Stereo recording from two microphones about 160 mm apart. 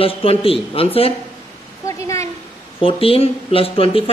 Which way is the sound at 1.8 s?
20° left (ahead or behind).